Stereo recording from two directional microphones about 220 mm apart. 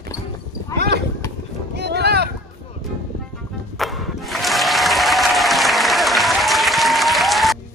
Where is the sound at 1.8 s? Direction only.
50° right (ahead or behind).